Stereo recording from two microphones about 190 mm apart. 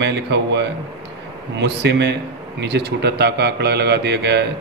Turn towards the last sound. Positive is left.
turn(degrees=-65)  # may be behind; listen again after turning